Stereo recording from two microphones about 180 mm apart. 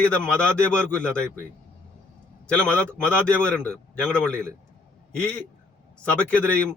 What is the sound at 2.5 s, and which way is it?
A man's voice, 5° left (ahead or behind).